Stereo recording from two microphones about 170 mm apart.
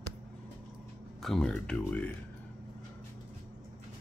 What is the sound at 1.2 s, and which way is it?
Speech, 5° left (ahead or behind).